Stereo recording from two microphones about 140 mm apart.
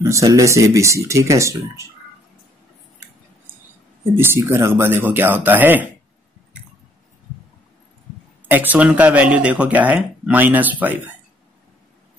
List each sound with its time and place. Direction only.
0.0 s speech: 25° right (ahead or behind)
4.2 s speech: 15° right (ahead or behind)
8.5 s speech: 10° right (ahead or behind)